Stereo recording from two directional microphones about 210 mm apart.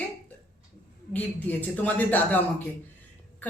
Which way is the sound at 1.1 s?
10° left (ahead or behind).